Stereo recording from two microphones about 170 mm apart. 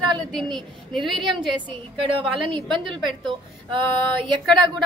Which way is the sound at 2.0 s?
30° right (ahead or behind).